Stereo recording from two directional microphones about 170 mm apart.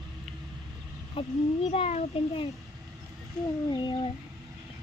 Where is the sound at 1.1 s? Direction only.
35° left (ahead or behind).